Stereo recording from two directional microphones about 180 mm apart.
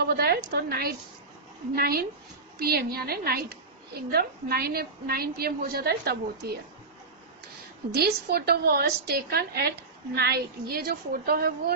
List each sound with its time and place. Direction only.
0.0 s a woman's voice: 60° right (ahead or behind)
7.9 s a woman's voice: 60° right (ahead or behind)